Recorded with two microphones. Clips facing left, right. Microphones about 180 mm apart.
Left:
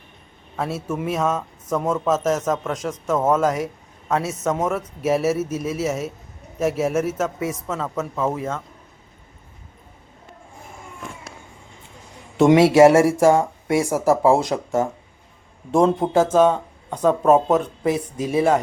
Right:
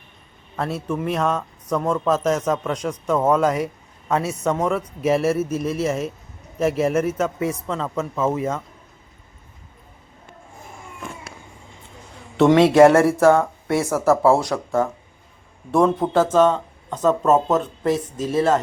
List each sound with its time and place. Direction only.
0.5 s speech: 5° left (ahead or behind)
12.4 s speech: 10° left (ahead or behind)